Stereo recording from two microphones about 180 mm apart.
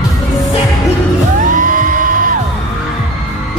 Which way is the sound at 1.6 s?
45° right (ahead or behind).